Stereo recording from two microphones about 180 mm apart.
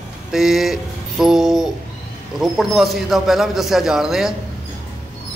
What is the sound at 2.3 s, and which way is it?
A man's voice, centre (ahead or behind).